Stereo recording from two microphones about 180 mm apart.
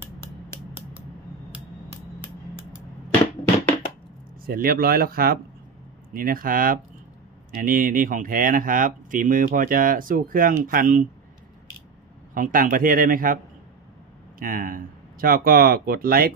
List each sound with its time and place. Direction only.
4.5 s speech: 55° right (ahead or behind)
12.4 s speech: 50° right (ahead or behind)
14.4 s speech: 50° right (ahead or behind)